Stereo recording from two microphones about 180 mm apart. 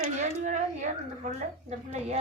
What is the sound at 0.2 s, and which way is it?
Speech, 40° right (ahead or behind).